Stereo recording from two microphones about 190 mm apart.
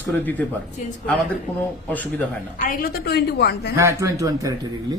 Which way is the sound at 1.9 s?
10° left (ahead or behind).